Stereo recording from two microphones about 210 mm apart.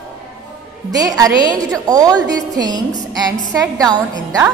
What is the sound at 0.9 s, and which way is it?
A woman's voice, 15° right (ahead or behind).